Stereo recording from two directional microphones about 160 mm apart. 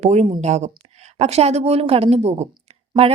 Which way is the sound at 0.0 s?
45° right (ahead or behind).